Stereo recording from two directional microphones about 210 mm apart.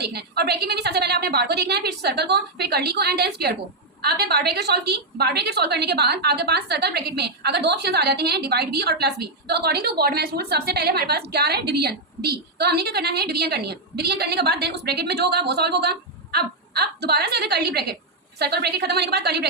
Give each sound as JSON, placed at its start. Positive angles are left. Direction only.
{"t": 0.0, "sound": "a woman's voice", "side_deg": -50}